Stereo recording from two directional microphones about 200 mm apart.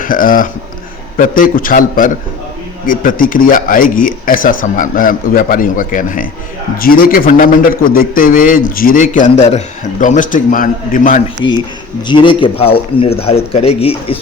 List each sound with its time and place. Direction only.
0.0 s speech: 45° left (ahead or behind)
11.4 s speech: 20° left (ahead or behind)